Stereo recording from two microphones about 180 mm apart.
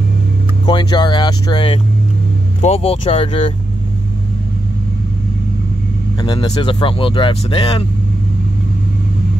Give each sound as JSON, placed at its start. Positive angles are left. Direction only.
{"t": 0.7, "sound": "speech", "side_deg": 25}
{"t": 6.2, "sound": "speech", "side_deg": 25}